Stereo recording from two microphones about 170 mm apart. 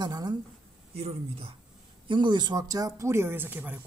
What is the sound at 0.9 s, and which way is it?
Speech, 35° right (ahead or behind).